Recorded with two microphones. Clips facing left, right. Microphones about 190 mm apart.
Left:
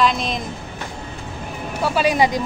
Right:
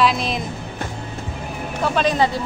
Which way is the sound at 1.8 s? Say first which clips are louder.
Left 1 dB; 10° left (ahead or behind).